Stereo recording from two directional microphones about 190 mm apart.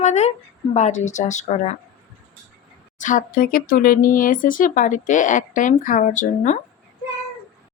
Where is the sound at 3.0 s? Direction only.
45° left (ahead or behind).